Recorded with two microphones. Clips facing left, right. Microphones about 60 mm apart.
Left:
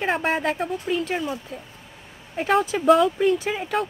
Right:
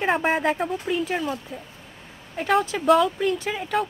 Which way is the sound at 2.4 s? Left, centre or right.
Centre.